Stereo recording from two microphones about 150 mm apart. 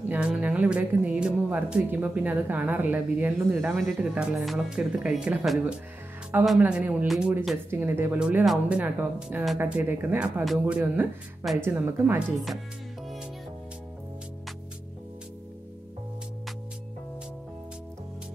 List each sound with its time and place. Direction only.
0.1 s speech: 10° right (ahead or behind)